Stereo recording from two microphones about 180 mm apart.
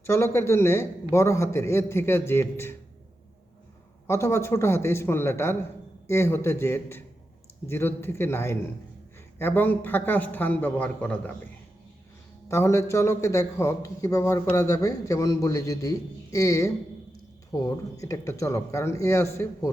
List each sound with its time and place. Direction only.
0.0 s a man's voice: 15° left (ahead or behind)
4.0 s a man's voice: 15° left (ahead or behind)
12.5 s a man's voice: 15° left (ahead or behind)